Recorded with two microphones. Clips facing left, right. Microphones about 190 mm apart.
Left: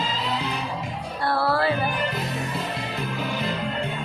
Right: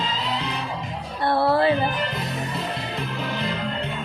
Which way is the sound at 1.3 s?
20° right (ahead or behind).